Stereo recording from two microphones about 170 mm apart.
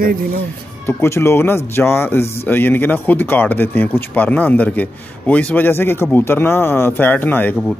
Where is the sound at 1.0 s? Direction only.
15° left (ahead or behind).